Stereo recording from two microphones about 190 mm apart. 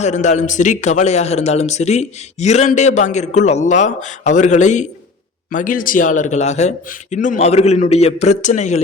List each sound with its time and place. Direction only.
0.0 s a man's voice: 40° left (ahead or behind)